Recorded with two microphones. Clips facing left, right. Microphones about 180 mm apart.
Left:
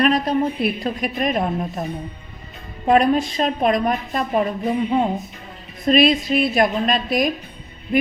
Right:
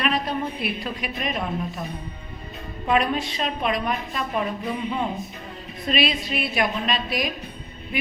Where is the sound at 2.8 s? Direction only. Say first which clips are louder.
Left 7 dB; 40° left (ahead or behind).